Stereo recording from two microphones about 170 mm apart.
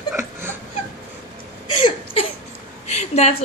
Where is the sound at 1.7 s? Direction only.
30° left (ahead or behind).